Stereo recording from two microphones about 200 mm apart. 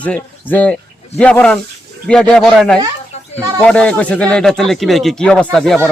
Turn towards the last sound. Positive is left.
turn(degrees=0)  # may be behind; listen again after turning